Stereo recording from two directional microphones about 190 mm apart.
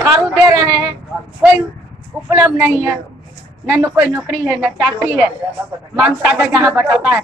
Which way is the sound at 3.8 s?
10° right (ahead or behind).